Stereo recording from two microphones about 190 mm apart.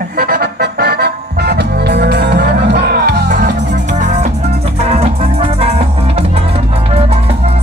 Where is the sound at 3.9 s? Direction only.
40° right (ahead or behind).